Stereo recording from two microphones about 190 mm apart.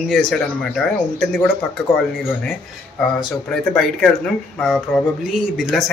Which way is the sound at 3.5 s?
5° left (ahead or behind).